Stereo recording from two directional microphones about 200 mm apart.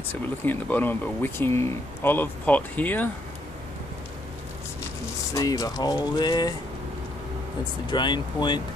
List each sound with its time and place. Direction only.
0.1 s speech: 10° left (ahead or behind)
5.3 s speech: 15° left (ahead or behind)
7.9 s speech: 20° left (ahead or behind)